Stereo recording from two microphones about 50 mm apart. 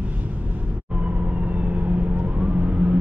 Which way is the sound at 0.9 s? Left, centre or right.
Right.